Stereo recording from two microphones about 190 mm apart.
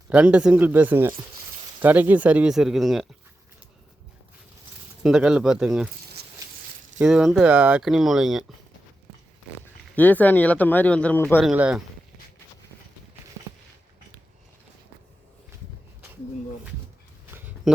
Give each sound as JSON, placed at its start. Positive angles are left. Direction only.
{"t": 0.1, "sound": "speech", "side_deg": -5}
{"t": 5.0, "sound": "speech", "side_deg": -5}
{"t": 6.2, "sound": "a sound", "side_deg": -55}
{"t": 7.0, "sound": "speech", "side_deg": -5}
{"t": 9.9, "sound": "speech", "side_deg": 10}
{"t": 11.3, "sound": "speech", "side_deg": -5}